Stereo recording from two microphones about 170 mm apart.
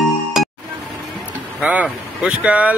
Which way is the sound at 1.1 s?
5° right (ahead or behind).